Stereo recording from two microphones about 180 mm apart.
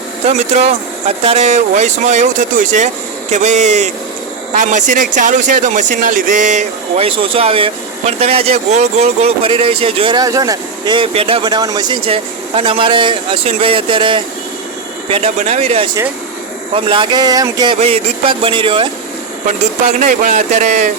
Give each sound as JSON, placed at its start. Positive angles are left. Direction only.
{"t": 0.3, "sound": "speech", "side_deg": -40}
{"t": 17.7, "sound": "speech", "side_deg": -35}
{"t": 19.9, "sound": "speech", "side_deg": -45}